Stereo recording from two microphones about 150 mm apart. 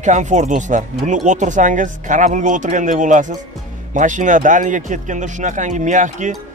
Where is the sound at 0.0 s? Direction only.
55° right (ahead or behind).